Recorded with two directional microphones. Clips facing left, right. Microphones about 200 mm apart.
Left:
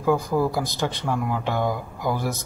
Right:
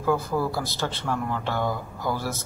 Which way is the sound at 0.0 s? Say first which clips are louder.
Left 3 dB; 15° left (ahead or behind).